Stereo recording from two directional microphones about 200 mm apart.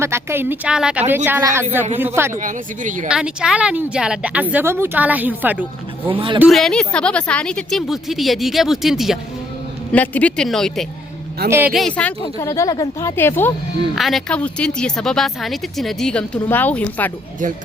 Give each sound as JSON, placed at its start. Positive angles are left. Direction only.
{"t": 0.0, "sound": "a woman's voice", "side_deg": -10}
{"t": 2.3, "sound": "speech", "side_deg": -40}
{"t": 3.1, "sound": "a woman's voice", "side_deg": -5}
{"t": 6.1, "sound": "speech", "side_deg": -25}
{"t": 6.4, "sound": "speech", "side_deg": 0}
{"t": 11.4, "sound": "a woman's voice", "side_deg": -10}
{"t": 11.7, "sound": "speech", "side_deg": 0}
{"t": 13.9, "sound": "speech", "side_deg": 0}